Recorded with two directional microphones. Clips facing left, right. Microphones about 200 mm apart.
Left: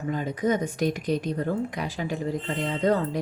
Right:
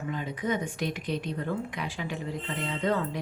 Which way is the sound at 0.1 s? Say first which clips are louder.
Left 6 dB; 40° left (ahead or behind).